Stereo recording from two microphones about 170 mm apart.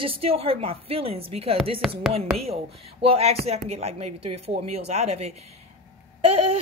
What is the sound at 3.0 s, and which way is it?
A woman's voice, 35° right (ahead or behind).